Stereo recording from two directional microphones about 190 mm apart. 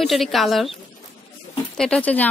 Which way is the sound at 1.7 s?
5° left (ahead or behind).